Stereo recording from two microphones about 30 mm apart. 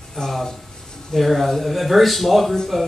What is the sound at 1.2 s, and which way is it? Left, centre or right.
Speech, centre.